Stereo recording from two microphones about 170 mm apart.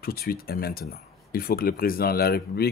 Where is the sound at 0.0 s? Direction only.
65° left (ahead or behind).